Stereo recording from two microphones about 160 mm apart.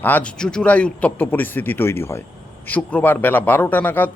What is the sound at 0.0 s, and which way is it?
A man's voice, 10° left (ahead or behind).